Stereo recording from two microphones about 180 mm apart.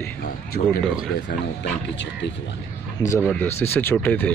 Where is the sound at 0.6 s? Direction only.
45° left (ahead or behind).